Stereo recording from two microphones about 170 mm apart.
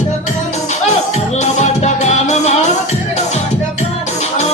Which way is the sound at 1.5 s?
40° left (ahead or behind).